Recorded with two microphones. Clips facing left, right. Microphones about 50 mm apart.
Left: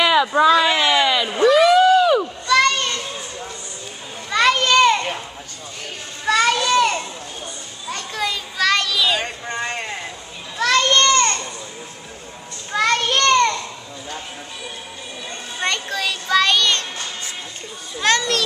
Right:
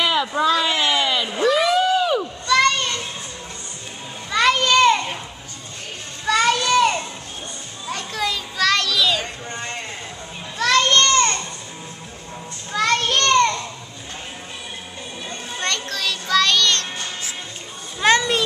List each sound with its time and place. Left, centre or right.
0.3 s speech: left
1.1 s a sound: centre
2.4 s children playing: centre
4.3 s children playing: centre
6.2 s children playing: centre
9.2 s a sound: left
10.6 s a sound: centre
12.7 s children playing: centre
15.6 s music: centre
18.0 s children playing: centre